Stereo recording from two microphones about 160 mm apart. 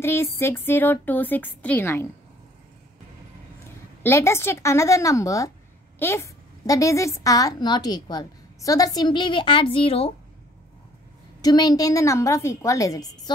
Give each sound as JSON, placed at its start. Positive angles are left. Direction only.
{"t": 0.0, "sound": "a woman's voice", "side_deg": 15}
{"t": 4.0, "sound": "a woman's voice", "side_deg": 15}
{"t": 11.4, "sound": "a woman's voice", "side_deg": 25}